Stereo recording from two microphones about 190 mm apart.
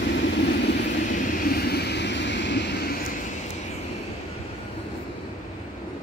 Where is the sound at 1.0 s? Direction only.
45° left (ahead or behind).